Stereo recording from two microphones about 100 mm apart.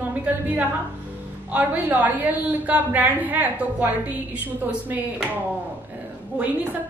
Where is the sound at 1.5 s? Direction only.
15° right (ahead or behind).